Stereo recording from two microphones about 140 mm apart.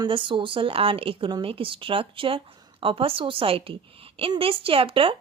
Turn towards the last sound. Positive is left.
turn(degrees=-40)  # may be behind; listen again after turning